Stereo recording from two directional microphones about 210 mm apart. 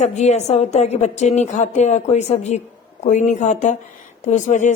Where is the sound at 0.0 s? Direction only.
30° left (ahead or behind).